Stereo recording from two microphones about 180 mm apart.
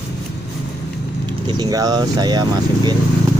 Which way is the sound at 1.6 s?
20° right (ahead or behind).